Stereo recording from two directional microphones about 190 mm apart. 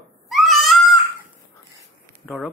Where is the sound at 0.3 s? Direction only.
Centre (ahead or behind).